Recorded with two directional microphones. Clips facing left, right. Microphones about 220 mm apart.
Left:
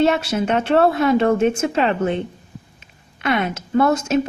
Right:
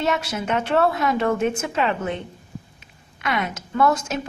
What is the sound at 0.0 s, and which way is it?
Speech, 30° left (ahead or behind).